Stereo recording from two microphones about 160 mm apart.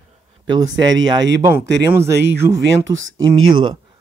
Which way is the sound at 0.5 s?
25° right (ahead or behind).